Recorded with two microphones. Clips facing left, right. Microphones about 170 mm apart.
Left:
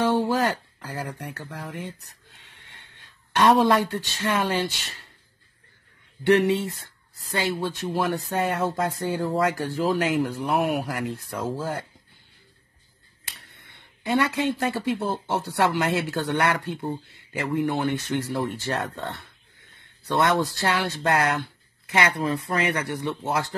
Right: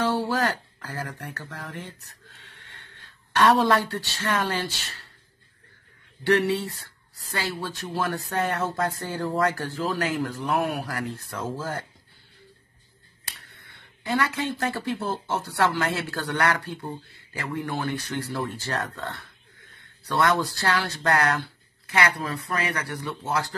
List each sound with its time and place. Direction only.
0.0 s speech: 15° left (ahead or behind)
6.2 s speech: 15° left (ahead or behind)
14.0 s speech: 15° left (ahead or behind)